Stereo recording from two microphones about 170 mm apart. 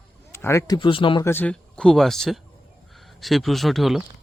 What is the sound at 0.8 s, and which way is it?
Speech, 30° left (ahead or behind).